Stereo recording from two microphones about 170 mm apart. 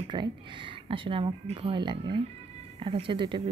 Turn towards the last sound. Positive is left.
turn(degrees=-30)  # may be behind; listen again after turning